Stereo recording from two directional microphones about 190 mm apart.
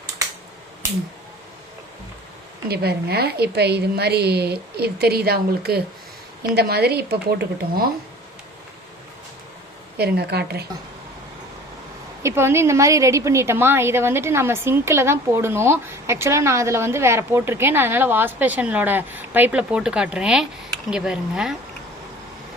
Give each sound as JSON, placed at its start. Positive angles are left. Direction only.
{"t": 2.6, "sound": "a woman's voice", "side_deg": -55}
{"t": 10.0, "sound": "a woman's voice", "side_deg": -60}
{"t": 12.2, "sound": "a woman's voice", "side_deg": -15}